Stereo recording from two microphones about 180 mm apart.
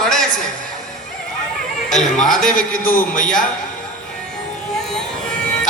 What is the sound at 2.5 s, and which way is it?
Speech, 50° left (ahead or behind).